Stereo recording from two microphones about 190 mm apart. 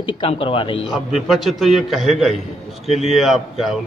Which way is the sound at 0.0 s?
30° left (ahead or behind).